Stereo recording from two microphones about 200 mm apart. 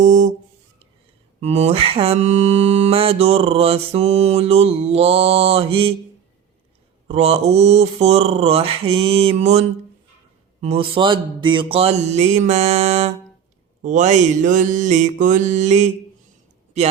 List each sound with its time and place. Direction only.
0.0 s a sound: 40° right (ahead or behind)
1.4 s mantra: 30° right (ahead or behind)
7.1 s mantra: 30° right (ahead or behind)